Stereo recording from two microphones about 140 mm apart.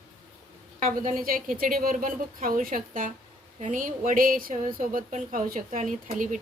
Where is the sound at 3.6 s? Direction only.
65° right (ahead or behind).